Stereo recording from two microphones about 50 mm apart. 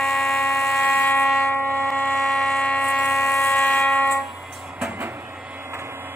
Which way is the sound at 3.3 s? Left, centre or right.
Left.